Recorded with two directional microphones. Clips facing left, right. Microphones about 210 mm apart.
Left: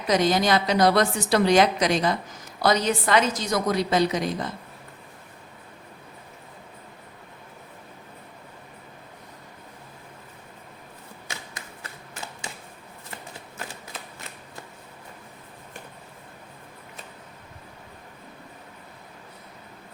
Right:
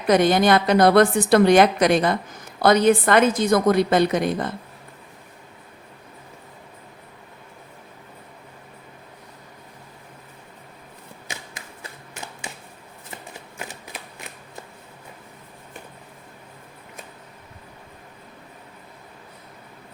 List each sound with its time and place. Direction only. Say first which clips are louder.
0.1 s a woman's voice: right 5 dB; 55° right (ahead or behind)